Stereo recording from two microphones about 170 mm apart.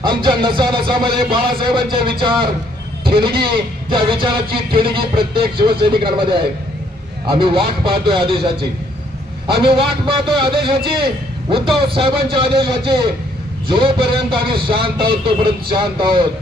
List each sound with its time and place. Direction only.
0.0 s speech: 30° right (ahead or behind)
9.6 s speech: 30° right (ahead or behind)